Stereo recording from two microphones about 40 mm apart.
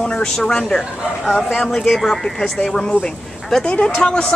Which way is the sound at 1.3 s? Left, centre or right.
Centre.